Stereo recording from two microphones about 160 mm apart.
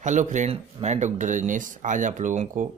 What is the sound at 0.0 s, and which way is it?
Speech, 50° right (ahead or behind).